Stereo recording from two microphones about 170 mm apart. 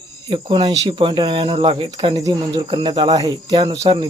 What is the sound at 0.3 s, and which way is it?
A man's voice, 30° right (ahead or behind).